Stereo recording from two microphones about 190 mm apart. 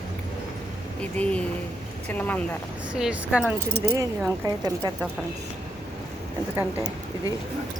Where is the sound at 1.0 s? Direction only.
5° left (ahead or behind).